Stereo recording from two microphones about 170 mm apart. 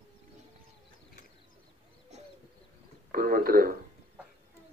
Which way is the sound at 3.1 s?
55° right (ahead or behind).